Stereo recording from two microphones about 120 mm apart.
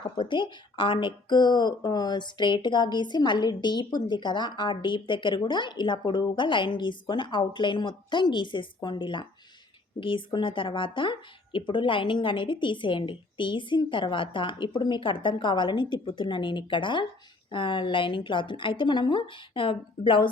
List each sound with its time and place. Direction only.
0.0 s a woman's voice: 40° left (ahead or behind)